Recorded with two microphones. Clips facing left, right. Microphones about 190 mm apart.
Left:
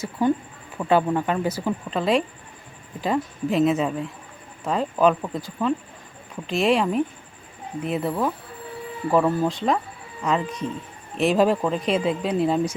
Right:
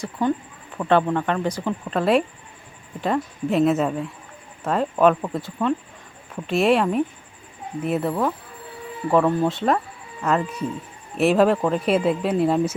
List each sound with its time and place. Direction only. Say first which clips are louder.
0.0 s speech: left 1 dB; 10° left (ahead or behind)